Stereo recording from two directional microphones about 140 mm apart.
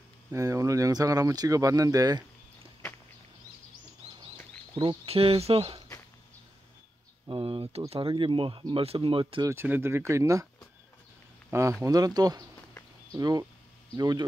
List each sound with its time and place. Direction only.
0.3 s speech: 25° right (ahead or behind)
5.0 s speech: 45° right (ahead or behind)
7.2 s speech: 40° right (ahead or behind)
9.5 s speech: 15° right (ahead or behind)
11.8 s speech: 25° right (ahead or behind)